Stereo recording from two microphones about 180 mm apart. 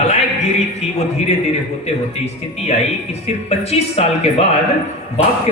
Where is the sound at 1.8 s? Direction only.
35° left (ahead or behind).